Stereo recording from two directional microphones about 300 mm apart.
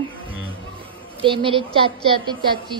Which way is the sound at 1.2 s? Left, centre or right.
Centre.